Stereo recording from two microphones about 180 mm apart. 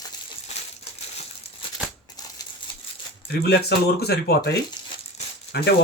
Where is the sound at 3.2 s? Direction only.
65° left (ahead or behind).